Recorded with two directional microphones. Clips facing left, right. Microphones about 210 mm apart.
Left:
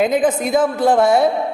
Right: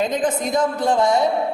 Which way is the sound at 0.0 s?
10° left (ahead or behind).